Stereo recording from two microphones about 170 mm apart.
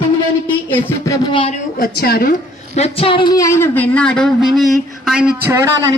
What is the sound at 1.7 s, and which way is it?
Speech, 60° left (ahead or behind).